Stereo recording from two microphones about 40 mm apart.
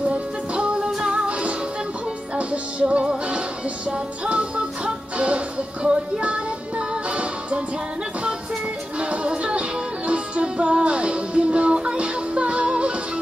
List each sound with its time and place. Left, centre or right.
0.7 s music: centre
2.3 s music: right
4.3 s music: right
9.1 s music: right